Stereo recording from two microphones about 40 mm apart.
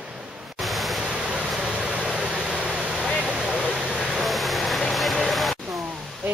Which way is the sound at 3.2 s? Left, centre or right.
Right.